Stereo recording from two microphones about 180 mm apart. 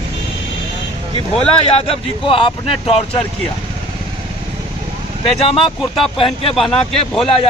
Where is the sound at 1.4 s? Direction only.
30° left (ahead or behind).